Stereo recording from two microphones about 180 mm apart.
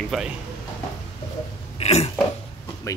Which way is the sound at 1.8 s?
35° left (ahead or behind).